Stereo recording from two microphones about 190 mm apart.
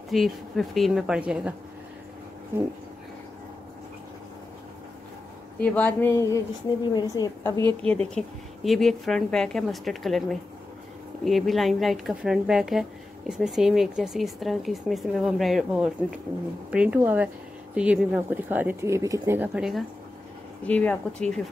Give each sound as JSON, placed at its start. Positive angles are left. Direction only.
{"t": 0.1, "sound": "speech", "side_deg": 0}
{"t": 5.6, "sound": "a woman's voice", "side_deg": 5}
{"t": 7.8, "sound": "speech", "side_deg": 5}
{"t": 20.6, "sound": "speech", "side_deg": 10}